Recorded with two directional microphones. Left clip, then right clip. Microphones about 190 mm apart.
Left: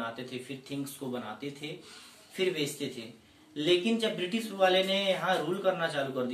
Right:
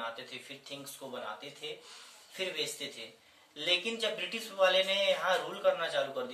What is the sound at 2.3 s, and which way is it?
Speech, 10° left (ahead or behind).